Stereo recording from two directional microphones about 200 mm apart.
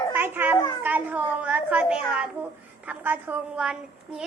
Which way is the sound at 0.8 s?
5° right (ahead or behind).